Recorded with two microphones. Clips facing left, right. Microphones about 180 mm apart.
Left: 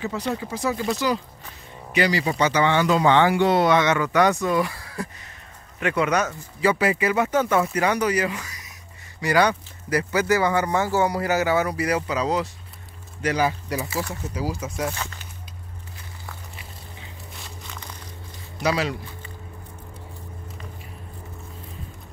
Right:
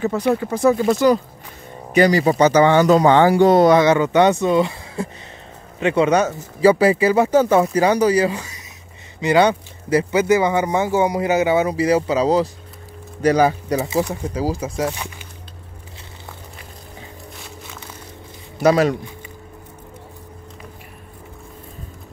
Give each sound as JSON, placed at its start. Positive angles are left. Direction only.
{"t": 0.0, "sound": "speech", "side_deg": -50}
{"t": 13.2, "sound": "speech", "side_deg": -40}
{"t": 13.8, "sound": "speech", "side_deg": -15}
{"t": 14.3, "sound": "speech", "side_deg": -40}
{"t": 15.0, "sound": "speech", "side_deg": -15}
{"t": 18.6, "sound": "speech", "side_deg": -50}